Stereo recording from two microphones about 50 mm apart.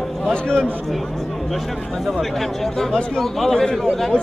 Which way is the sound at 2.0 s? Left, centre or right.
Centre.